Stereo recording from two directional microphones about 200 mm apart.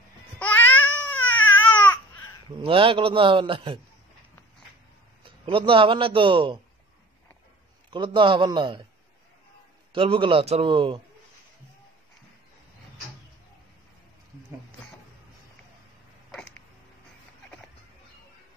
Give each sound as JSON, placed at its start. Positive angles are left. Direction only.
{"t": 0.4, "sound": "babbling", "side_deg": 5}
{"t": 2.5, "sound": "a man's voice", "side_deg": -25}
{"t": 5.4, "sound": "a man's voice", "side_deg": -25}
{"t": 7.9, "sound": "a man's voice", "side_deg": -25}
{"t": 9.9, "sound": "a man's voice", "side_deg": -25}